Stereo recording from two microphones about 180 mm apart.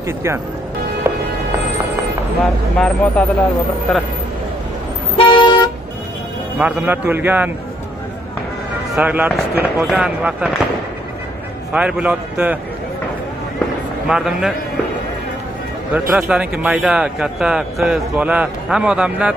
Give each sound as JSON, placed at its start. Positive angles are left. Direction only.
{"t": 0.0, "sound": "a man's voice", "side_deg": -15}
{"t": 2.4, "sound": "speech", "side_deg": 5}
{"t": 5.1, "sound": "vehicle", "side_deg": 30}
{"t": 6.6, "sound": "a man's voice", "side_deg": -10}
{"t": 8.9, "sound": "speech", "side_deg": -10}
{"t": 11.7, "sound": "a man's voice", "side_deg": -5}
{"t": 14.0, "sound": "speech", "side_deg": -5}
{"t": 15.9, "sound": "speech", "side_deg": -5}